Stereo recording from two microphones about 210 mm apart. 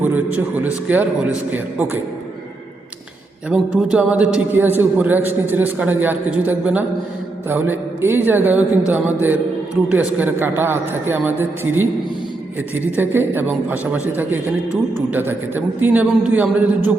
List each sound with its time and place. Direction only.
0.0 s a man's voice: 5° right (ahead or behind)
3.5 s a man's voice: 5° right (ahead or behind)